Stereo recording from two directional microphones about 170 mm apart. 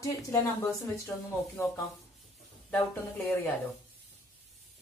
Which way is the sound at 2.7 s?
15° left (ahead or behind).